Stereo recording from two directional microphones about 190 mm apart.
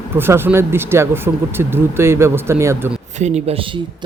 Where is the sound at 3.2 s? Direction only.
35° right (ahead or behind).